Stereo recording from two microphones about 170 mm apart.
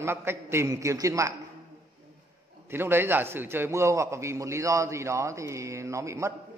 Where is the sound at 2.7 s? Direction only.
15° right (ahead or behind).